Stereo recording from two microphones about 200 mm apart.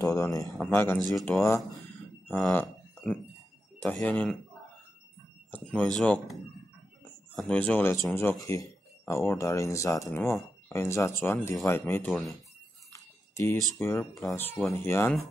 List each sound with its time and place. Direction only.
0.0 s speech: 15° left (ahead or behind)
5.5 s speech: 5° left (ahead or behind)
12.1 s speech: centre (ahead or behind)
12.9 s a sound: 15° left (ahead or behind)
13.7 s speech: 10° left (ahead or behind)